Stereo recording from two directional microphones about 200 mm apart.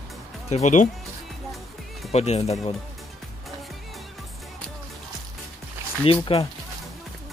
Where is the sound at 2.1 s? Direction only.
30° left (ahead or behind).